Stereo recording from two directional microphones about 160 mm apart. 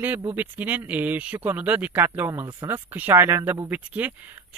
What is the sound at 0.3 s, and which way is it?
Speech, 10° right (ahead or behind).